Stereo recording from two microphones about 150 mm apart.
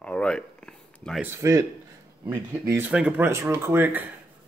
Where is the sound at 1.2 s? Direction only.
20° right (ahead or behind).